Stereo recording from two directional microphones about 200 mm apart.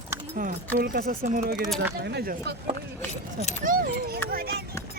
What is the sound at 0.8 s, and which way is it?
Speech, 45° right (ahead or behind).